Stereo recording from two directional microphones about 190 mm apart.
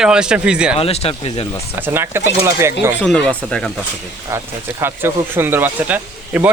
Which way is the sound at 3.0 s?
5° left (ahead or behind).